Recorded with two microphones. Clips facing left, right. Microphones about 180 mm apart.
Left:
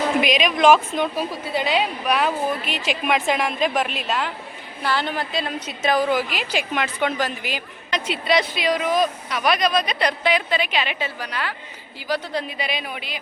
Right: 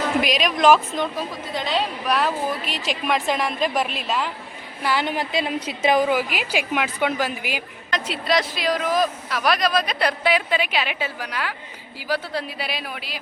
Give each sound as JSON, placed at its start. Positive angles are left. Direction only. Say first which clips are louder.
{"t": 0.2, "sound": "speech", "louder": "left 1 dB", "side_deg": 0}
{"t": 4.8, "sound": "a woman's voice", "louder": "right 1 dB", "side_deg": -15}
{"t": 6.0, "sound": "a woman's voice", "louder": "right 1 dB", "side_deg": -10}